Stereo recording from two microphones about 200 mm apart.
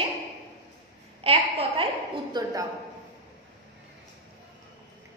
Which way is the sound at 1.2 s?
30° right (ahead or behind).